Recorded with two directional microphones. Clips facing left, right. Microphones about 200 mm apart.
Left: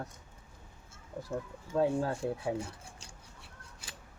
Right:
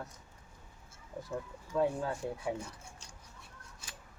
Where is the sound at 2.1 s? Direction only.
30° left (ahead or behind).